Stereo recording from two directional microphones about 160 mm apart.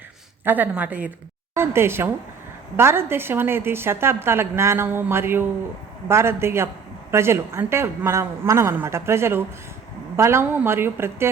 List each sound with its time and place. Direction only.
0.4 s a woman's voice: 10° right (ahead or behind)